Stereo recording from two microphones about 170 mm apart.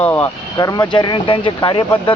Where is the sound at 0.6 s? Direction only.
20° left (ahead or behind).